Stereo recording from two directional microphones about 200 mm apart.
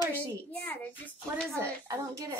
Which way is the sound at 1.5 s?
15° right (ahead or behind).